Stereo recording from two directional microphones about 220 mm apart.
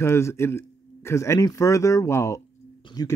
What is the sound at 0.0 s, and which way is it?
A man's voice, 10° left (ahead or behind).